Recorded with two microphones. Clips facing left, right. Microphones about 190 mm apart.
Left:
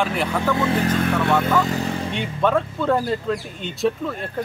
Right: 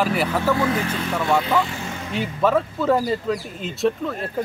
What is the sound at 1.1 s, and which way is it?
Speech, 10° right (ahead or behind).